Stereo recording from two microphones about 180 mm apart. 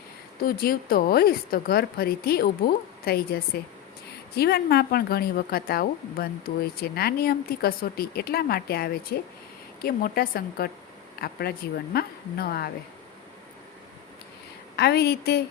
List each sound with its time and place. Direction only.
0.4 s a woman's voice: 55° left (ahead or behind)
14.8 s a woman's voice: 65° left (ahead or behind)